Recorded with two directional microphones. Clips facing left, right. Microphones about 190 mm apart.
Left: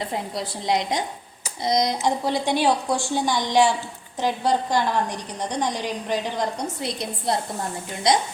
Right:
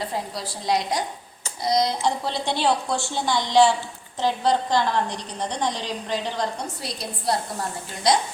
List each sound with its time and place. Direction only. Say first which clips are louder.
0.1 s a woman's voice: left 2 dB; 20° left (ahead or behind)